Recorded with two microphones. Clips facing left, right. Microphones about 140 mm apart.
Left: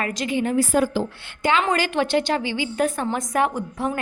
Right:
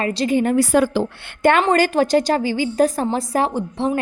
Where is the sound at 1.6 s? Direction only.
40° right (ahead or behind).